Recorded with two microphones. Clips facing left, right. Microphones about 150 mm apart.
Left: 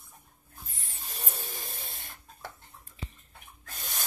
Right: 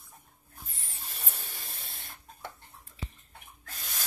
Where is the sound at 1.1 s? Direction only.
40° left (ahead or behind).